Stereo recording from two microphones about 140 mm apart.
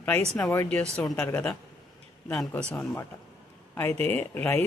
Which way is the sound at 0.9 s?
5° left (ahead or behind).